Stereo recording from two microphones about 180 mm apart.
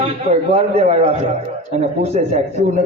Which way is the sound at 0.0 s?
35° right (ahead or behind).